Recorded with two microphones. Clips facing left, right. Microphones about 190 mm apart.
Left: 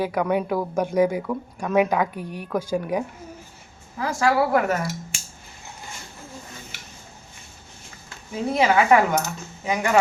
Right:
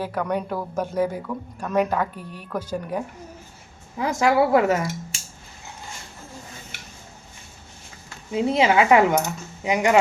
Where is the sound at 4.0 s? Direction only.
20° right (ahead or behind).